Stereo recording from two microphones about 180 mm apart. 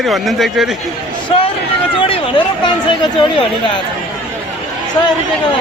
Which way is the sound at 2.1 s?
30° left (ahead or behind).